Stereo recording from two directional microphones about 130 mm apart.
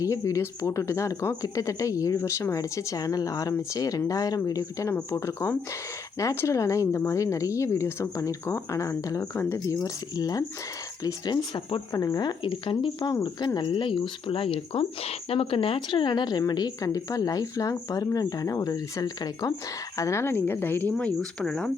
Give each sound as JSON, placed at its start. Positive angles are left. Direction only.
{"t": 0.0, "sound": "speech", "side_deg": 25}
{"t": 12.4, "sound": "speech", "side_deg": 40}
{"t": 21.2, "sound": "speech", "side_deg": 5}